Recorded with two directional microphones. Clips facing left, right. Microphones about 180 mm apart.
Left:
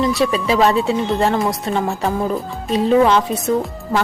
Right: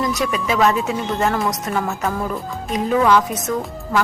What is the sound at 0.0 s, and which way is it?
Speech, 30° left (ahead or behind).